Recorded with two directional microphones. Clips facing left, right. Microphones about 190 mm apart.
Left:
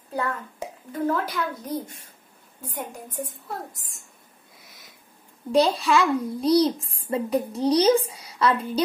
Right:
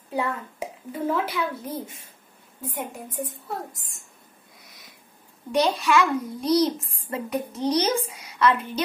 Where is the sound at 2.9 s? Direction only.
Centre (ahead or behind).